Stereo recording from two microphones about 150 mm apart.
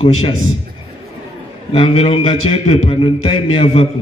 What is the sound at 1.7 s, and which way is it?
A man's voice, 40° left (ahead or behind).